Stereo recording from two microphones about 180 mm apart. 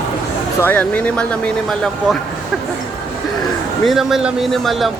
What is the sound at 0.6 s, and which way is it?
Speech, 10° left (ahead or behind).